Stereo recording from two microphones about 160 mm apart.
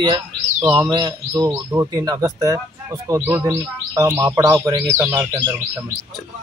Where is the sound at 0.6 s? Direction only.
20° right (ahead or behind).